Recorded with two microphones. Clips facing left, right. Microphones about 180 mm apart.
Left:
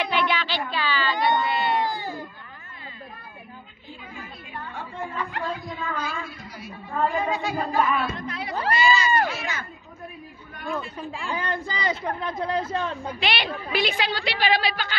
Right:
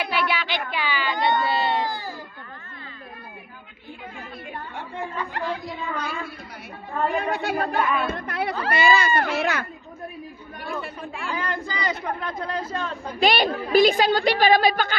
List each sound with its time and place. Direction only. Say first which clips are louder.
0.0 s speech: left 1 dB; 5° right (ahead or behind)
1.4 s baby cry: right 1 dB; 30° right (ahead or behind)
5.5 s speech: right 1 dB; 70° right (ahead or behind)
11.0 s speech: even; centre (ahead or behind)
11.3 s speech: even; 30° left (ahead or behind)
13.2 s a woman's voice: right 9 dB; 40° right (ahead or behind)